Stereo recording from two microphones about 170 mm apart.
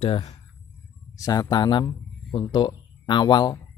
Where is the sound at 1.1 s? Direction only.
20° left (ahead or behind).